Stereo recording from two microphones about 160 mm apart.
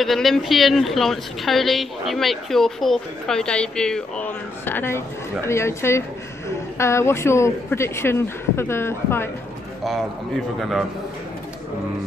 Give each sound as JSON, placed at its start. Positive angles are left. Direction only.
{"t": 0.0, "sound": "a woman's voice", "side_deg": 0}
{"t": 9.8, "sound": "a woman's voice", "side_deg": 0}